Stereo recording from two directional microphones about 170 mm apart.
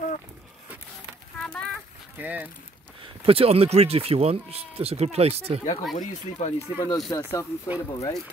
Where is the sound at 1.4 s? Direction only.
5° left (ahead or behind).